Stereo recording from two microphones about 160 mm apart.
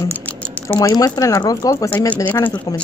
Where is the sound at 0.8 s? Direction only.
25° left (ahead or behind).